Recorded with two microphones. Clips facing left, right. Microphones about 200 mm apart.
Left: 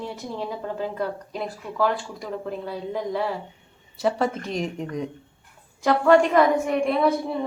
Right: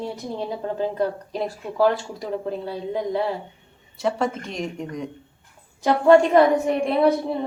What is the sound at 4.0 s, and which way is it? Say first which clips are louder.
Speech: even; centre (ahead or behind).